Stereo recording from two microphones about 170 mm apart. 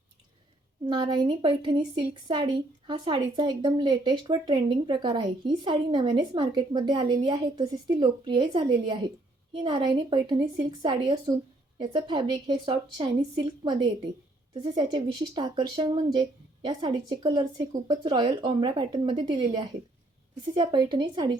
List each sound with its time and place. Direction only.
0.9 s a woman's voice: 25° right (ahead or behind)